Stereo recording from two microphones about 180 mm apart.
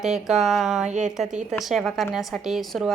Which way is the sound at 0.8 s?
40° right (ahead or behind).